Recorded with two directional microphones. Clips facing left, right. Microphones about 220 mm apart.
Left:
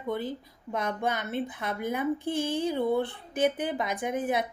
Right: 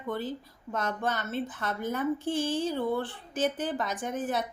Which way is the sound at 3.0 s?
60° left (ahead or behind).